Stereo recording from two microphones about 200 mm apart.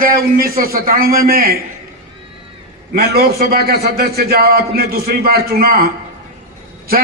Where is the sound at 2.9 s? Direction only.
50° right (ahead or behind).